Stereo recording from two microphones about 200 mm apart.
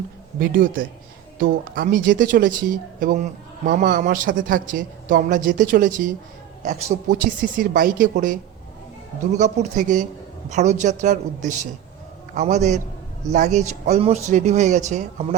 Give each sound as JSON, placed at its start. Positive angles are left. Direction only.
{"t": 0.3, "sound": "a man's voice", "side_deg": -45}
{"t": 7.1, "sound": "a man's voice", "side_deg": -40}
{"t": 9.4, "sound": "a man's voice", "side_deg": -40}